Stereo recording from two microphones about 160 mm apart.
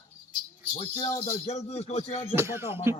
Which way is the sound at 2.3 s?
15° right (ahead or behind).